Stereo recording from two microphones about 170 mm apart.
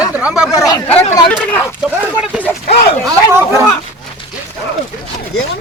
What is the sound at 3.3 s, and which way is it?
Speech, 15° right (ahead or behind).